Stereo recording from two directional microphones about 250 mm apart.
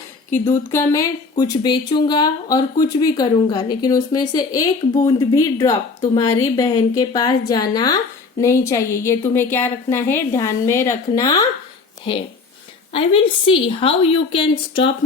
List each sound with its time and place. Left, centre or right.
0.7 s speech: centre
12.9 s a woman's voice: left